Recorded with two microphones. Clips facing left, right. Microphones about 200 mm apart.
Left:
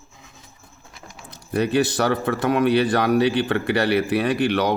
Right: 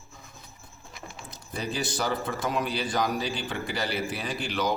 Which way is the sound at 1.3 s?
65° left (ahead or behind).